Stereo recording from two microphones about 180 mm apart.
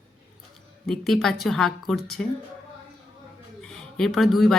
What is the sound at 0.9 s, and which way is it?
Speech, centre (ahead or behind).